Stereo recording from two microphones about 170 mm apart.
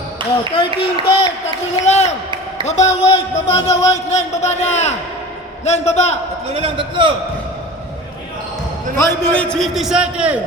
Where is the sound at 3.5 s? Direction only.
40° left (ahead or behind).